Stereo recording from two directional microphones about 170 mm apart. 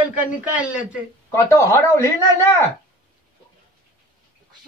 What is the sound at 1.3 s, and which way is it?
Speech, 20° left (ahead or behind).